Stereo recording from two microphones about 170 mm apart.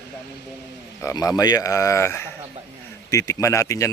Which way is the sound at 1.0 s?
20° left (ahead or behind).